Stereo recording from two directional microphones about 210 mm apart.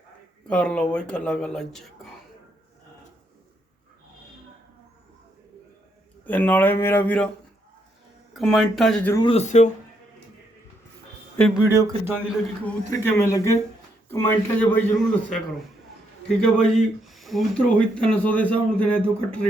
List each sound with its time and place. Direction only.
0.4 s speech: 5° left (ahead or behind)
6.2 s a man's voice: 10° left (ahead or behind)
8.3 s speech: centre (ahead or behind)
9.1 s speech: 25° left (ahead or behind)
11.3 s speech: centre (ahead or behind)
11.7 s a man's voice: 15° right (ahead or behind)
12.6 s a man's voice: 10° left (ahead or behind)
16.4 s speech: 5° left (ahead or behind)